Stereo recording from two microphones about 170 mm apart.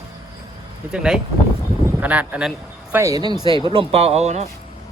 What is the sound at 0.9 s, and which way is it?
A man's voice, 5° right (ahead or behind).